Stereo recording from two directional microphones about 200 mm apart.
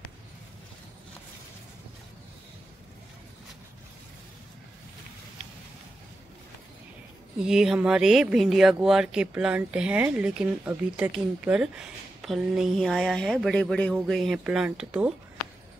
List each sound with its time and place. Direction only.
7.4 s speech: 5° right (ahead or behind)